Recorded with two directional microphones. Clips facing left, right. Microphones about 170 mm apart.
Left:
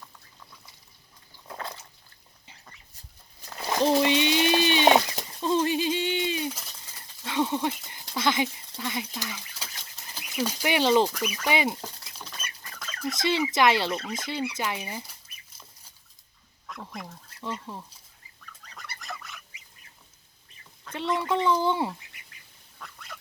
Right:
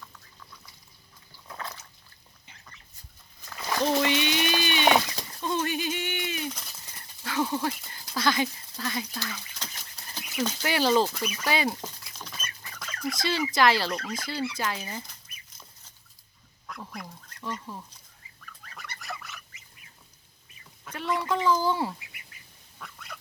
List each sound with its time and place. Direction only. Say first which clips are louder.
1.5 s a sound: left 2 dB; 30° left (ahead or behind)
3.4 s a sound: left 3 dB; 30° left (ahead or behind)
4.0 s pigeon: left 3 dB; 25° left (ahead or behind)
7.3 s a sound: left 1 dB; 25° left (ahead or behind)
9.9 s a sound: left 1 dB; centre (ahead or behind); by 11.1 s 20° left (ahead or behind)
11.4 s speech: left 1 dB; 20° left (ahead or behind)
12.1 s bird: even; 5° left (ahead or behind)
12.6 s fowl: even; 5° right (ahead or behind)
13.1 s speech: left 2 dB; 20° left (ahead or behind)
16.6 s duck: left 1 dB; centre (ahead or behind)
17.5 s speech: left 1 dB; 5° left (ahead or behind)
18.6 s goose: even; 5° right (ahead or behind)
21.2 s speech: even; 25° left (ahead or behind)
22.8 s duck: right 1 dB; centre (ahead or behind)